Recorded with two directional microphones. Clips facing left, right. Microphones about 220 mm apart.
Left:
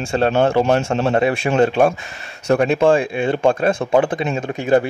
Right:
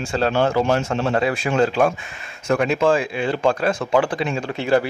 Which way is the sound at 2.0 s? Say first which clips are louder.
Left 2 dB; 35° left (ahead or behind).